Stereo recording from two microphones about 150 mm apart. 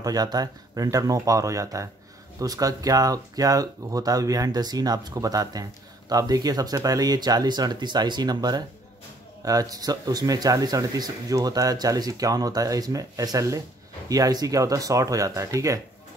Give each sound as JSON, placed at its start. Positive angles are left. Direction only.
{"t": 0.0, "sound": "speech", "side_deg": -25}